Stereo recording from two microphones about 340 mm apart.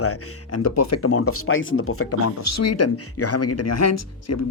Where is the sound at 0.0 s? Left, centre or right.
Left.